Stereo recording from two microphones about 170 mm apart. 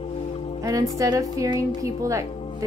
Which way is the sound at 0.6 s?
20° right (ahead or behind).